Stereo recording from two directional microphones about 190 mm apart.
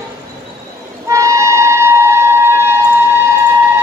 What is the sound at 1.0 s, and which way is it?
Music, 15° right (ahead or behind).